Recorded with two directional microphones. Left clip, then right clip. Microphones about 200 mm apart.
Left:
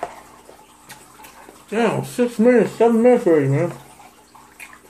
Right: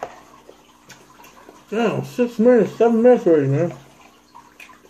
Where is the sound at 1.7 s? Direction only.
5° right (ahead or behind).